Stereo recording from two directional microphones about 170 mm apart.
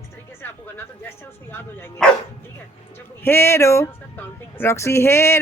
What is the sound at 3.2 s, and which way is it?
Speech, 15° left (ahead or behind).